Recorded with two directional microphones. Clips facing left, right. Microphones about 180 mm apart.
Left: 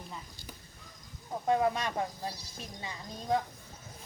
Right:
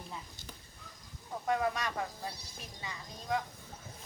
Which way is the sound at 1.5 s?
25° left (ahead or behind).